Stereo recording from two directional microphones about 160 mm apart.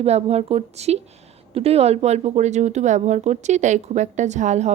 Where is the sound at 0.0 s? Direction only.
40° right (ahead or behind).